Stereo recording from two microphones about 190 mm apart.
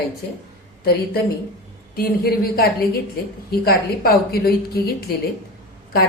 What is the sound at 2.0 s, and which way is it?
A woman's voice, 55° left (ahead or behind).